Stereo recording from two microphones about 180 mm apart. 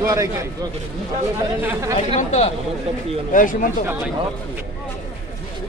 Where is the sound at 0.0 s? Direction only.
20° right (ahead or behind).